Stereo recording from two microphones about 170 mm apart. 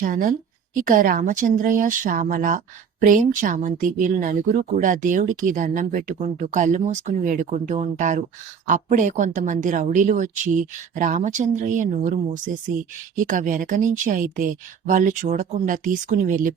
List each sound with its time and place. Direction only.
0.0 s speech: 55° right (ahead or behind)